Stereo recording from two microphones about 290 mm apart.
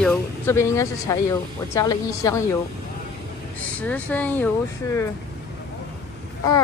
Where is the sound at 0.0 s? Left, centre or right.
Centre.